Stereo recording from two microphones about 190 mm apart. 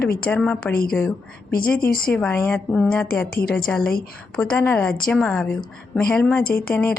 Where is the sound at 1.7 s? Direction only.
50° left (ahead or behind).